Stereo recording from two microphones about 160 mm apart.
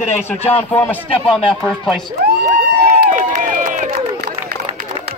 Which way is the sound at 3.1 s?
55° right (ahead or behind).